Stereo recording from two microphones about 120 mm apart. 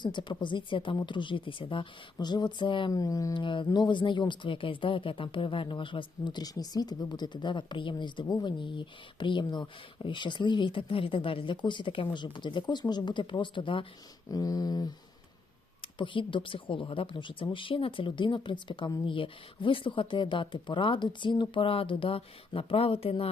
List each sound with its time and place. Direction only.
0.0 s speech: 40° left (ahead or behind)
2.9 s a sound: 30° left (ahead or behind)
3.3 s speech: 45° left (ahead or behind)
14.3 s speech: 30° left (ahead or behind)
15.8 s speech: 45° left (ahead or behind)